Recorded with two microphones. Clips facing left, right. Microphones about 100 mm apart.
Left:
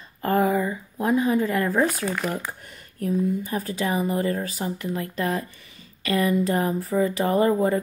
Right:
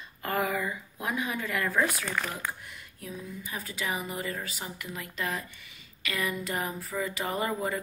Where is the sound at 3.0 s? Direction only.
50° left (ahead or behind).